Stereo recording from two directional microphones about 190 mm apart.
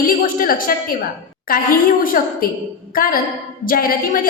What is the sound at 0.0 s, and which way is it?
A woman's voice, 50° left (ahead or behind).